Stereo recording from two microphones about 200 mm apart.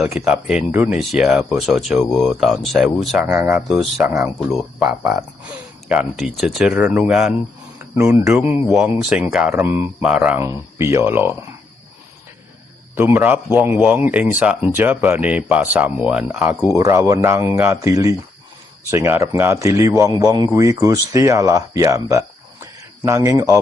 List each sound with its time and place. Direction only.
0.0 s a man's voice: 5° right (ahead or behind)
13.0 s a man's voice: 10° right (ahead or behind)
22.6 s a sound: 15° right (ahead or behind)